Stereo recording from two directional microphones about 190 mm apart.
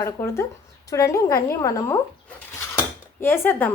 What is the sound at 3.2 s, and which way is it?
Speech, 10° left (ahead or behind).